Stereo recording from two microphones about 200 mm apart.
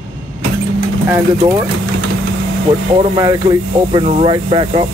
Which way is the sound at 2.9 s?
20° right (ahead or behind).